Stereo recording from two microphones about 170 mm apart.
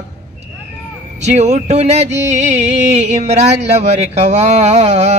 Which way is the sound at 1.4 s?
40° right (ahead or behind).